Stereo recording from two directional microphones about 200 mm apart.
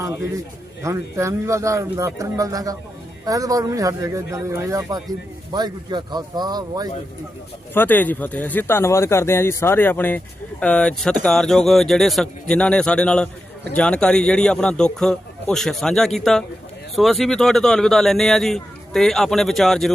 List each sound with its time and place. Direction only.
0.8 s speech: 15° right (ahead or behind)
7.7 s speech: 10° left (ahead or behind)